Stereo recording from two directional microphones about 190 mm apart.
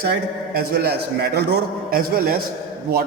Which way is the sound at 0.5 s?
60° right (ahead or behind).